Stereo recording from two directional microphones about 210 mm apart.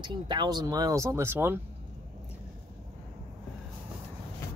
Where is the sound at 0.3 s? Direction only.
20° right (ahead or behind).